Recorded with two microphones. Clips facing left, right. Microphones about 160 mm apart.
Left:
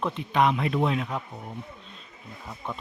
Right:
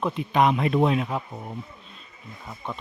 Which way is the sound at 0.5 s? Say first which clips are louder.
Right 4 dB; 35° right (ahead or behind).